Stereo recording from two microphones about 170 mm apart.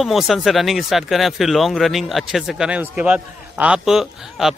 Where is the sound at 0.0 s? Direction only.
Centre (ahead or behind).